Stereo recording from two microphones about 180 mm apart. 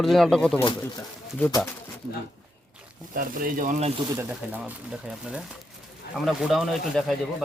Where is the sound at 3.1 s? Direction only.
50° right (ahead or behind).